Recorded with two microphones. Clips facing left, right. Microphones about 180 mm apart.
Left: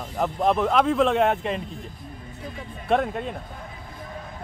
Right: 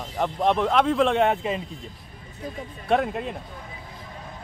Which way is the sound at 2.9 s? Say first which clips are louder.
Even; centre (ahead or behind).